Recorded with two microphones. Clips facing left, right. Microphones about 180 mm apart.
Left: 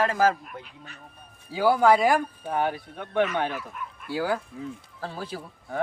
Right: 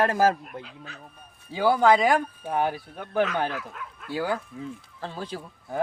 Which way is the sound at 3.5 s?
90° right.